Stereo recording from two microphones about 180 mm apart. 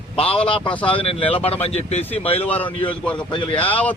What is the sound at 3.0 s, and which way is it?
Speech, 5° left (ahead or behind).